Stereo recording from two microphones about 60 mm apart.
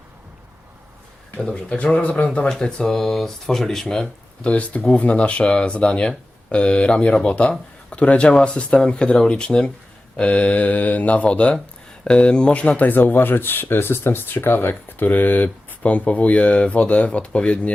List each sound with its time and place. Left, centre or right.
1.4 s speech: centre
4.0 s speech: left